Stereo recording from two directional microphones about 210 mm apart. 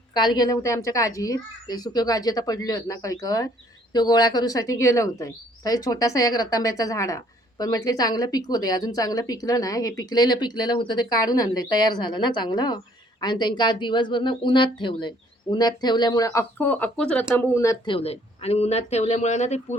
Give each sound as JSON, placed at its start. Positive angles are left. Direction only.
{"t": 0.1, "sound": "a woman's voice", "side_deg": 20}